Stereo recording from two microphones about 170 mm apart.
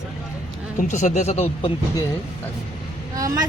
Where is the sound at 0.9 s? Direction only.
45° left (ahead or behind).